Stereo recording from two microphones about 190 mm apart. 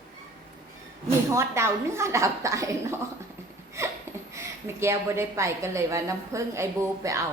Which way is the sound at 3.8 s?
15° right (ahead or behind).